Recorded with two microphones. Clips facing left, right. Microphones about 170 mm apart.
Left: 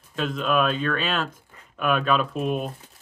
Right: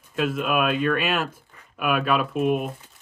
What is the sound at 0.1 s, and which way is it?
Speech, 10° right (ahead or behind).